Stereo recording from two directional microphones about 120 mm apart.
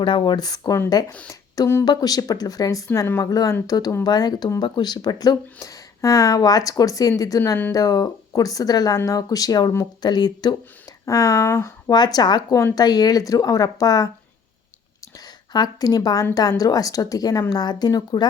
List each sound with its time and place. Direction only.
0.0 s speech: 45° left (ahead or behind); by 1.8 s 25° left (ahead or behind)
1.8 s speech: 35° left (ahead or behind)
11.9 s speech: 35° left (ahead or behind)
15.5 s speech: 35° left (ahead or behind)